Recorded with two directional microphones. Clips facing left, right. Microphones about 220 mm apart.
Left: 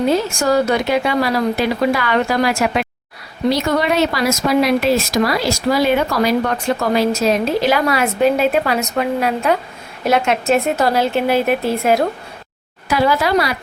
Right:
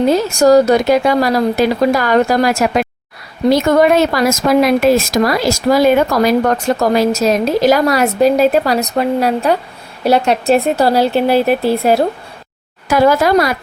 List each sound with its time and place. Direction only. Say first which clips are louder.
0.1 s a woman's voice: right 6 dB; 40° right (ahead or behind)
12.9 s speech: right 5 dB; 45° right (ahead or behind)